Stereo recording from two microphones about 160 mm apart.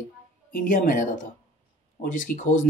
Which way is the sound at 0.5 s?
60° left (ahead or behind).